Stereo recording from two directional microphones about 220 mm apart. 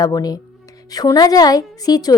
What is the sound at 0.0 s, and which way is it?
Speech, 15° left (ahead or behind).